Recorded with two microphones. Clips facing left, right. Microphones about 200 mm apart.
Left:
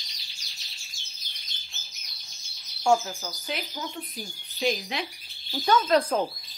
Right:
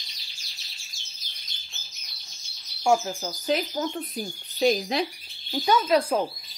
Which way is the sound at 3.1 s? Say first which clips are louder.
Right 8 dB; 30° right (ahead or behind).